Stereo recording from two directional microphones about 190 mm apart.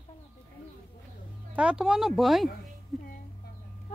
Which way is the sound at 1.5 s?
5° right (ahead or behind).